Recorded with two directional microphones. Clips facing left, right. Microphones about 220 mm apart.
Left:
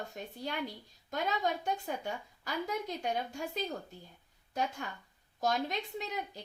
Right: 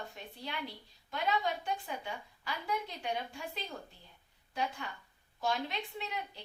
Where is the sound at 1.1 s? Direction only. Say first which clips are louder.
Left 1 dB; 45° left (ahead or behind).